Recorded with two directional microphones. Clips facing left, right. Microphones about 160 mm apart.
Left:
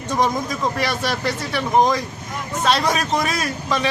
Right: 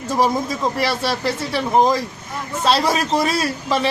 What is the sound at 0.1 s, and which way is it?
A man's voice, 25° right (ahead or behind).